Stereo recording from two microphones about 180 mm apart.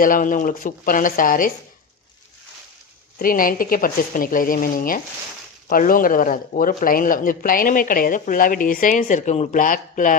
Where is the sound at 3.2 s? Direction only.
50° left (ahead or behind).